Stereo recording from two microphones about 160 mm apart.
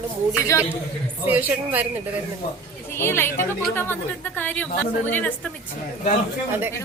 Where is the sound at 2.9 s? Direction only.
15° left (ahead or behind).